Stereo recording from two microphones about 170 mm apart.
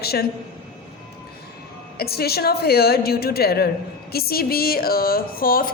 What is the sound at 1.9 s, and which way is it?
A woman's voice, 65° left (ahead or behind).